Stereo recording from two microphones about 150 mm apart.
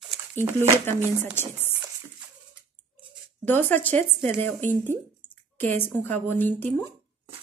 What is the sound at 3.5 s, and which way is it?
Speech, 15° left (ahead or behind).